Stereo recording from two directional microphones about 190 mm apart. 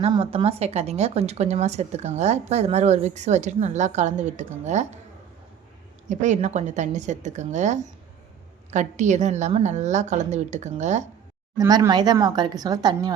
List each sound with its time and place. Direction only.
0.0 s a woman's voice: 30° right (ahead or behind)
6.1 s a woman's voice: 40° right (ahead or behind)
11.5 s speech: 15° right (ahead or behind)